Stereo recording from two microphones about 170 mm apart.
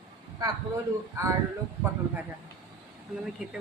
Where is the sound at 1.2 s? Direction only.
15° right (ahead or behind).